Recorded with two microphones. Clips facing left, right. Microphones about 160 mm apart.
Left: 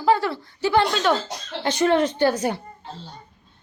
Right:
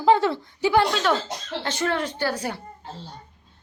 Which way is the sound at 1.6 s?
15° left (ahead or behind).